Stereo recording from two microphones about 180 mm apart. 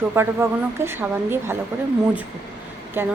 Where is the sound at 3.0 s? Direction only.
15° right (ahead or behind).